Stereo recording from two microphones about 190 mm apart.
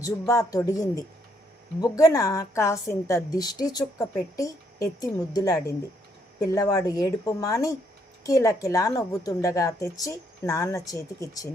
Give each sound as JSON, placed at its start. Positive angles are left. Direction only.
{"t": 0.0, "sound": "a woman's voice", "side_deg": 15}